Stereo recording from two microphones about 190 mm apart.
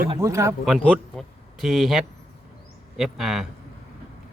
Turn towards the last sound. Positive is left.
turn(degrees=0)  # may be behind; listen again after turning